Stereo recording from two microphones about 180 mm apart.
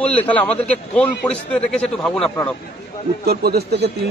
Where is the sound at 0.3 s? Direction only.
10° left (ahead or behind).